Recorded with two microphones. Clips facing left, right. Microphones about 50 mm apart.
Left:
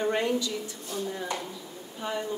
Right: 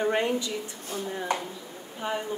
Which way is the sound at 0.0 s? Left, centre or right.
Centre.